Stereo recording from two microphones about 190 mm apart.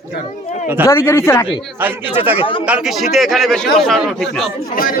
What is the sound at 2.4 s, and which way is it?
Speech, 30° left (ahead or behind).